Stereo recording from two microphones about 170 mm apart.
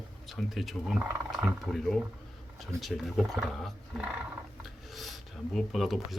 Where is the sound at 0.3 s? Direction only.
Centre (ahead or behind).